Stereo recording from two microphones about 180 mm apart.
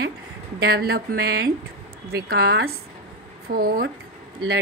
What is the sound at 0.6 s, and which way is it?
A woman's voice, 60° right (ahead or behind).